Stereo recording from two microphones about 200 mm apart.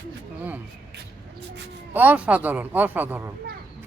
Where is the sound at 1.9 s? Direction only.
5° right (ahead or behind).